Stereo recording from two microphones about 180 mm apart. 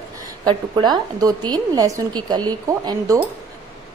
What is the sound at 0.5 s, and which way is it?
A woman's voice, 25° right (ahead or behind).